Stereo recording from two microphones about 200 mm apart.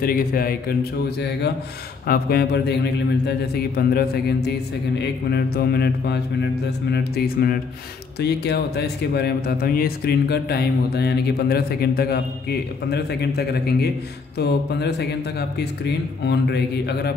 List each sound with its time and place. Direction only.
0.0 s speech: 45° left (ahead or behind)
2.0 s a man's voice: 50° left (ahead or behind)